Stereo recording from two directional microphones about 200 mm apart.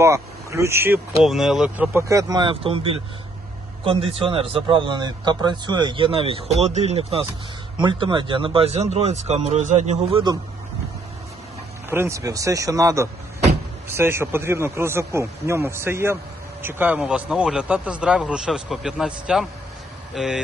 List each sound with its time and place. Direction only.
0.0 s a man's voice: 15° right (ahead or behind)
11.9 s a man's voice: 10° right (ahead or behind)